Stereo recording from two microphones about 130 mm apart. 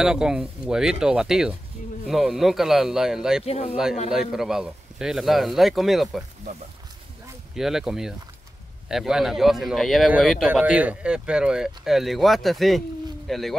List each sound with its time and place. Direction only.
0.0 s speech: 5° right (ahead or behind)
3.4 s speech: 55° left (ahead or behind)
4.1 s speech: 5° right (ahead or behind)
7.5 s speech: 5° right (ahead or behind)
10.5 s speech: 10° right (ahead or behind)